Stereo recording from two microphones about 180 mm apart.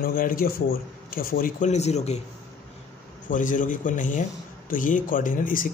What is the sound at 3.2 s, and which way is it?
Speech, 45° left (ahead or behind).